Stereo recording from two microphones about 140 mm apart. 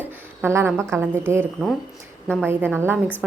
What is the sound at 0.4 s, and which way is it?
A woman's voice, 15° right (ahead or behind).